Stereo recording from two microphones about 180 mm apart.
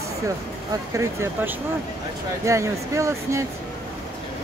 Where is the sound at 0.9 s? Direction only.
15° right (ahead or behind).